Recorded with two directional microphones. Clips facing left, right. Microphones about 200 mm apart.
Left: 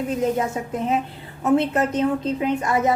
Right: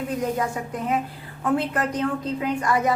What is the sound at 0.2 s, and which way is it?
A woman's voice, 25° left (ahead or behind).